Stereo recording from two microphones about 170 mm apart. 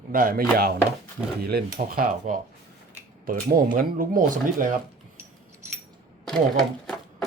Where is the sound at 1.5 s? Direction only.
65° right (ahead or behind).